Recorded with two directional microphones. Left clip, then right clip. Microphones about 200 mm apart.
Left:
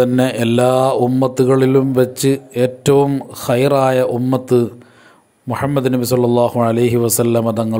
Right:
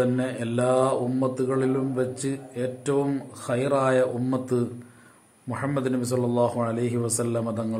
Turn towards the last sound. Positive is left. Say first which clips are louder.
# left 12 dB
turn(degrees=40)  # may be behind; listen again after turning